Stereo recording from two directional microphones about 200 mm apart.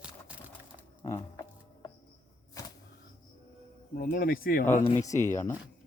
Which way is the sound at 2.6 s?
15° left (ahead or behind).